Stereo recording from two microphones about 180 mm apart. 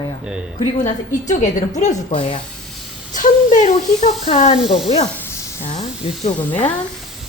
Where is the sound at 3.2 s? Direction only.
45° left (ahead or behind).